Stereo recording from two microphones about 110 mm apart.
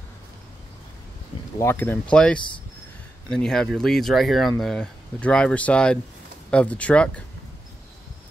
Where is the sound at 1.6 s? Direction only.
20° left (ahead or behind).